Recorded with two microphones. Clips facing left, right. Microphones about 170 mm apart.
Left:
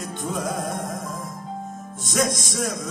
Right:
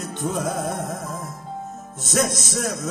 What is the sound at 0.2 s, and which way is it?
Music, centre (ahead or behind).